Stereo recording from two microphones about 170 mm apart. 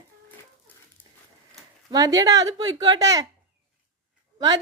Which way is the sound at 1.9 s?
20° right (ahead or behind).